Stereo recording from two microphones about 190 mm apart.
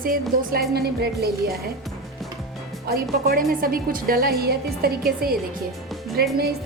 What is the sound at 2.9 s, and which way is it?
A woman's voice, 50° right (ahead or behind).